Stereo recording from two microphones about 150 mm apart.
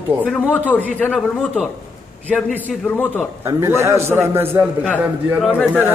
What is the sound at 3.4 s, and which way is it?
A man's voice, 20° right (ahead or behind).